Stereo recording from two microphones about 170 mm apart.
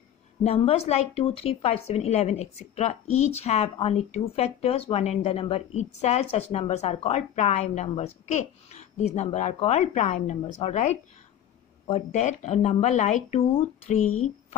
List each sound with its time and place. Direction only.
0.4 s speech: 35° left (ahead or behind)
11.9 s speech: 45° left (ahead or behind)